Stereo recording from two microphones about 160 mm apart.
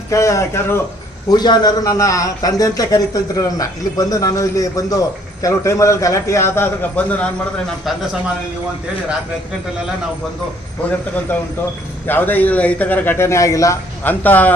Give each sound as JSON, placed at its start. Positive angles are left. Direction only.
{"t": 0.1, "sound": "a man's voice", "side_deg": 20}
{"t": 7.9, "sound": "a man's voice", "side_deg": 0}
{"t": 11.3, "sound": "a man's voice", "side_deg": 10}